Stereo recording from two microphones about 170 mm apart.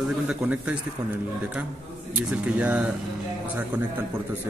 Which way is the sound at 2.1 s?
5° right (ahead or behind).